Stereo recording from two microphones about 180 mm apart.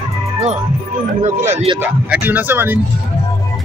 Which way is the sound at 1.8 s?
10° right (ahead or behind).